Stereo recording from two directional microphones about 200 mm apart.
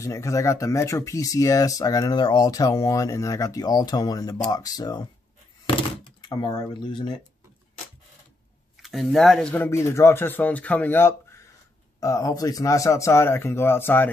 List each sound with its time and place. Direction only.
0.0 s speech: 15° left (ahead or behind)
6.0 s speech: 20° left (ahead or behind)
8.8 s speech: centre (ahead or behind)